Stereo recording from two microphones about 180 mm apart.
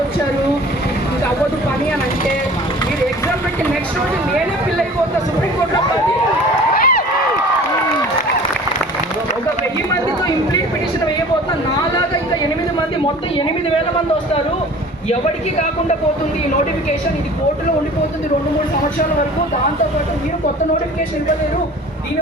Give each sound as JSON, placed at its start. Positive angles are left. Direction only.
{"t": 6.7, "sound": "run", "side_deg": 55}
{"t": 9.9, "sound": "chatter", "side_deg": 20}